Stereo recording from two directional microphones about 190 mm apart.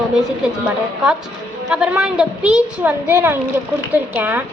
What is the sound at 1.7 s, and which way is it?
Speech, 5° right (ahead or behind).